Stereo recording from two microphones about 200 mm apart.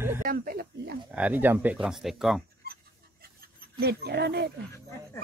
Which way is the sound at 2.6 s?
50° right (ahead or behind).